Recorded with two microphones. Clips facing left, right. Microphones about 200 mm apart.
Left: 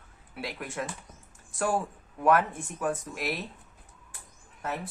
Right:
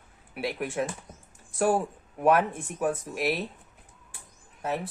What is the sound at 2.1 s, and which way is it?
Speech, 20° right (ahead or behind).